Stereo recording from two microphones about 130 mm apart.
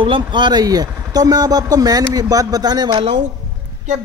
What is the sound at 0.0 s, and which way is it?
Speech, 40° right (ahead or behind).